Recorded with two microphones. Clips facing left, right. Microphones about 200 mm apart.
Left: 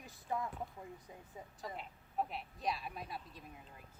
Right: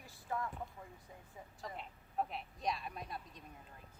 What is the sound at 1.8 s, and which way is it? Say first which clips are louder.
Speech: even; centre (ahead or behind).